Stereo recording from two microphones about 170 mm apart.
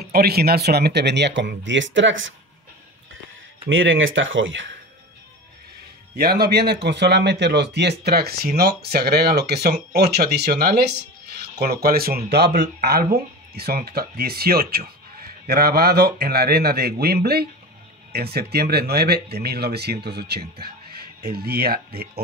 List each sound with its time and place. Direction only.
0.0 s speech: 65° right (ahead or behind); by 2.3 s 90° right
3.6 s speech: 90° right
6.1 s speech: 65° right (ahead or behind)